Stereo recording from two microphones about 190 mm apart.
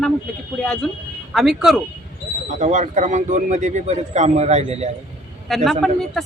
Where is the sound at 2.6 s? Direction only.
40° right (ahead or behind).